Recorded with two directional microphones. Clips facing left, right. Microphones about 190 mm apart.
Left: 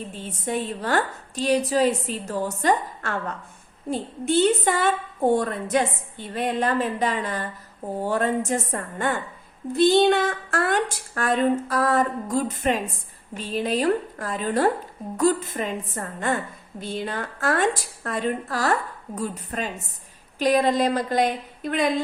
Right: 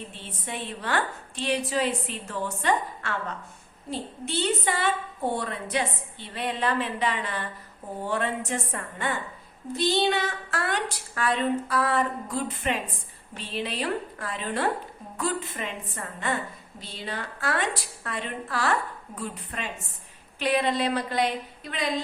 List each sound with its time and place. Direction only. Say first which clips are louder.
0.1 s a woman's voice: left 9 dB; 45° left (ahead or behind)